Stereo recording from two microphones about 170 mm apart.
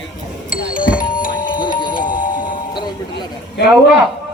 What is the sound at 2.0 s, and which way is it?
Doorbell, 55° left (ahead or behind).